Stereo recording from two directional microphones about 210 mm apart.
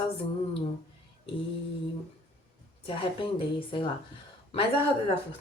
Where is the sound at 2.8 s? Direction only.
25° left (ahead or behind).